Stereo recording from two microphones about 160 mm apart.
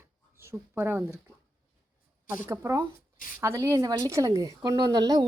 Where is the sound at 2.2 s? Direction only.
10° right (ahead or behind).